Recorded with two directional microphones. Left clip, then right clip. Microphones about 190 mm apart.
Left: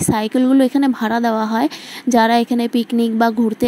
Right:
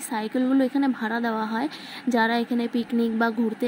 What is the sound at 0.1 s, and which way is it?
Speech, 35° left (ahead or behind).